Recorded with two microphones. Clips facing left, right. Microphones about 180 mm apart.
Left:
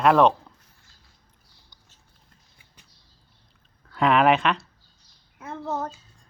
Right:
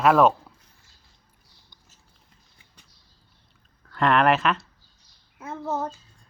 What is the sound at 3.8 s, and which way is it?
Speech, centre (ahead or behind).